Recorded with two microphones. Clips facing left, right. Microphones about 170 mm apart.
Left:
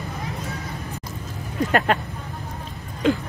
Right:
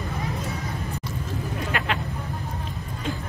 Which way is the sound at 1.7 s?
45° left (ahead or behind).